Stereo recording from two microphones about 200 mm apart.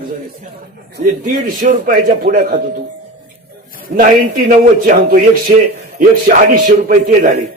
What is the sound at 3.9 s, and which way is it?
A man's voice, 45° right (ahead or behind).